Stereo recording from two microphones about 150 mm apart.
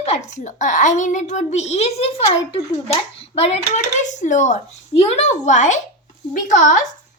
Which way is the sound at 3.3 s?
40° left (ahead or behind).